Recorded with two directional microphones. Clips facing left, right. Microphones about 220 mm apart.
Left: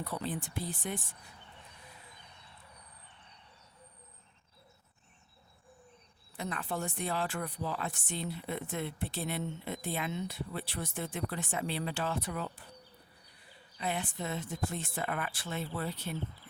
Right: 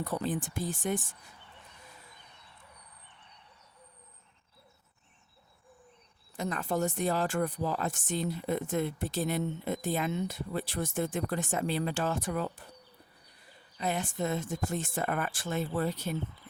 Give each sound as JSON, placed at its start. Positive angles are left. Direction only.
{"t": 0.0, "sound": "speech", "side_deg": -45}
{"t": 6.3, "sound": "speech", "side_deg": -45}
{"t": 13.7, "sound": "speech", "side_deg": -45}